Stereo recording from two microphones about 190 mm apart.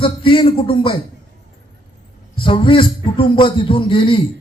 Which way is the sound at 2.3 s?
25° left (ahead or behind).